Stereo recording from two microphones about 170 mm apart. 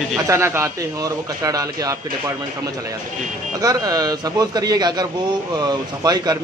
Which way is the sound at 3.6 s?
20° right (ahead or behind).